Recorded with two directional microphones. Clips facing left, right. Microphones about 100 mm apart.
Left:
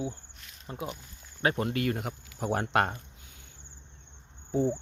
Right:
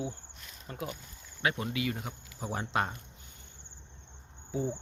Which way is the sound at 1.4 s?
35° left (ahead or behind).